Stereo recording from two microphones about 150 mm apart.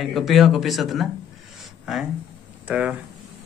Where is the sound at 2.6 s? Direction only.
10° right (ahead or behind).